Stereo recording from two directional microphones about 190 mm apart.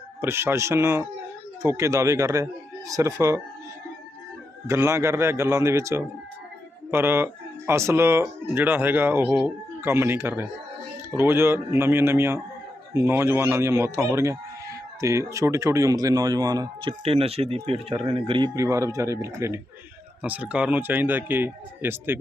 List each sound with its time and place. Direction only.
0.2 s speech: 15° right (ahead or behind)
4.6 s speech: 15° right (ahead or behind)